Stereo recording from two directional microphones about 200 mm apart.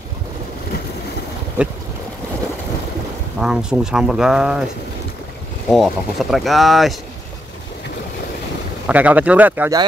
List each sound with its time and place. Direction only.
3.3 s speech: 5° right (ahead or behind)
5.7 s speech: centre (ahead or behind)
8.8 s speech: 5° right (ahead or behind)